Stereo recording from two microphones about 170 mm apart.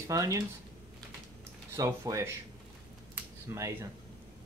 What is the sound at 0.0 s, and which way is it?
Speech, 20° right (ahead or behind).